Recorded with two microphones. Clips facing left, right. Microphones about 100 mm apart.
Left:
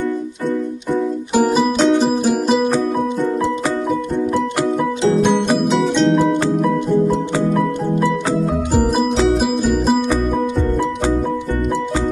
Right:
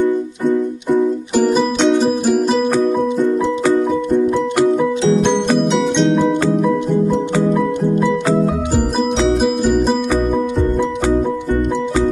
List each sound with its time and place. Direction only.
1.4 s music: 5° left (ahead or behind)
4.7 s music: 5° left (ahead or behind)
8.9 s music: centre (ahead or behind)